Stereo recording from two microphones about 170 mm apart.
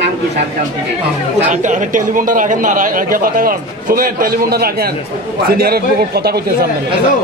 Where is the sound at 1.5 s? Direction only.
45° right (ahead or behind); by 6.4 s 70° right (ahead or behind).